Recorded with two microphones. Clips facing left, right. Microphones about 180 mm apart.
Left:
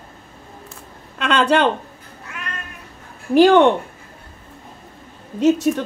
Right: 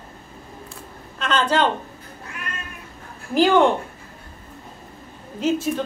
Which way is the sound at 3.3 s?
70° left (ahead or behind).